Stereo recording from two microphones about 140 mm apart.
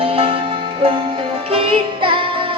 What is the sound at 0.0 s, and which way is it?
Music, 40° right (ahead or behind).